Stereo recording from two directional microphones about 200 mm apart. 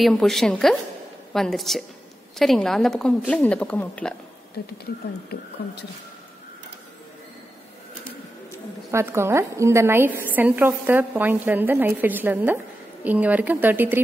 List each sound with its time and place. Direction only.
0.0 s speech: centre (ahead or behind)
4.6 s speech: 50° left (ahead or behind)
8.9 s a woman's voice: 15° right (ahead or behind)